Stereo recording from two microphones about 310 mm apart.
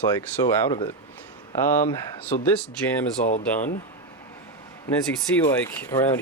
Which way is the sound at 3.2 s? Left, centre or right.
Left.